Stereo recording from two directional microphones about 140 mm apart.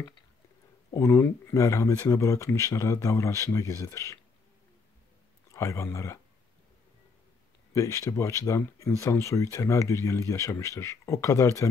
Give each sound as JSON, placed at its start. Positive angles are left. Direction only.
{"t": 0.9, "sound": "speech", "side_deg": 20}
{"t": 5.5, "sound": "speech", "side_deg": 20}
{"t": 7.7, "sound": "speech", "side_deg": 25}